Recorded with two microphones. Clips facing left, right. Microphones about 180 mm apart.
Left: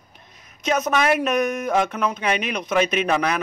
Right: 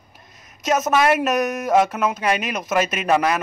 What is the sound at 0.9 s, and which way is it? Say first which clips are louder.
Speech: right 3 dB; 5° right (ahead or behind).